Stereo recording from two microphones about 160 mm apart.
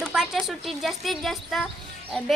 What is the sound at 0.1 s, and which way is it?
A child's voice, centre (ahead or behind).